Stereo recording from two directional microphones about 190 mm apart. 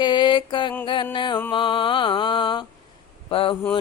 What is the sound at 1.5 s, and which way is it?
Mantra, 25° left (ahead or behind).